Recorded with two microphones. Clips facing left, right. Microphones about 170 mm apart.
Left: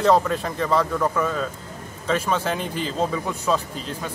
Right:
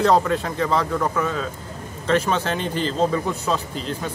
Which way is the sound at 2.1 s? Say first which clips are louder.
Right 2 dB; 5° left (ahead or behind).